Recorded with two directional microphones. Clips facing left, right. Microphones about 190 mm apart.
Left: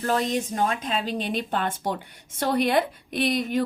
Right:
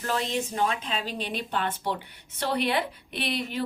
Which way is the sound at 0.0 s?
40° left (ahead or behind).